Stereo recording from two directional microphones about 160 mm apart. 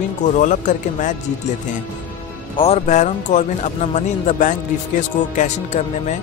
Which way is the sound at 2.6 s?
40° left (ahead or behind).